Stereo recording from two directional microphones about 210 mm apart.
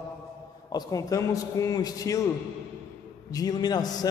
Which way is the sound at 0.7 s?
15° left (ahead or behind).